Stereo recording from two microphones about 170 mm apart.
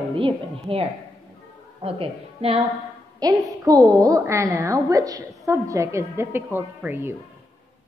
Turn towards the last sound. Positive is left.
turn(degrees=-10)  # may be behind; listen again after turning